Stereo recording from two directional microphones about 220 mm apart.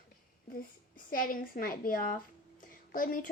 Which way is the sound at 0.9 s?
40° left (ahead or behind).